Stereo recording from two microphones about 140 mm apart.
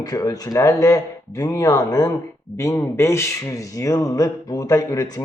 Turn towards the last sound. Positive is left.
turn(degrees=25)  # may be behind; listen again after turning